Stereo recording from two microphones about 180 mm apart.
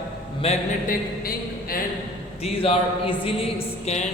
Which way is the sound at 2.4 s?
35° left (ahead or behind).